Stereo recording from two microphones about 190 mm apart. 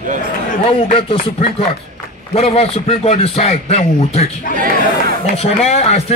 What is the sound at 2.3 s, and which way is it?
A man's voice, 30° left (ahead or behind).